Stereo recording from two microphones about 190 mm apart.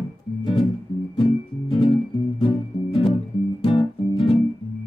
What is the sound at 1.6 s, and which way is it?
Music, 25° left (ahead or behind).